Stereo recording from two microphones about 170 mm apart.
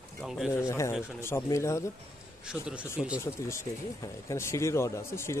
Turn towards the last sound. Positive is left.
turn(degrees=15)  # may be behind; listen again after turning